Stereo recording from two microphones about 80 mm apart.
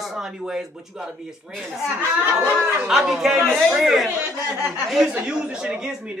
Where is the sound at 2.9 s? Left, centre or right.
Centre.